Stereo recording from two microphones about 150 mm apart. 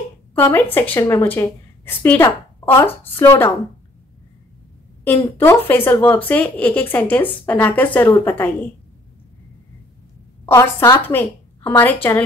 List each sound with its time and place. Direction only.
0.3 s a woman's voice: 15° left (ahead or behind)
5.0 s speech: 15° left (ahead or behind)
10.5 s speech: 20° left (ahead or behind)